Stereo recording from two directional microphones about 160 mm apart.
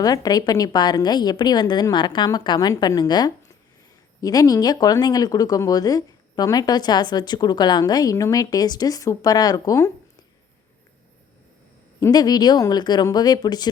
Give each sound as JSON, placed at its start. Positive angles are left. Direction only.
{"t": 0.0, "sound": "speech", "side_deg": 25}
{"t": 11.9, "sound": "speech", "side_deg": 25}